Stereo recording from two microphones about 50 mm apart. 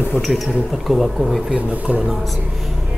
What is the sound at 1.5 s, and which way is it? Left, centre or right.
Speech, right.